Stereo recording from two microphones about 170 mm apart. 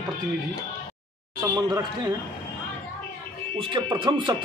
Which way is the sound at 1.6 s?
25° right (ahead or behind).